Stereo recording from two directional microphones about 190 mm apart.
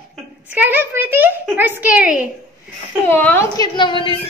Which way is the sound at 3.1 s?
10° left (ahead or behind).